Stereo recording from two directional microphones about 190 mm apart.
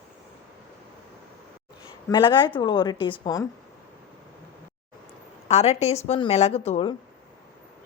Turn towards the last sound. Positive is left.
turn(degrees=30)  # may be behind; listen again after turning